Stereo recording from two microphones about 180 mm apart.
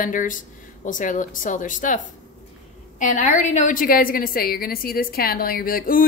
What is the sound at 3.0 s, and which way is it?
A woman's voice, 45° left (ahead or behind).